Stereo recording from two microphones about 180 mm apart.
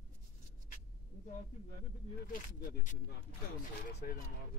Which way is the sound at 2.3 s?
50° left (ahead or behind).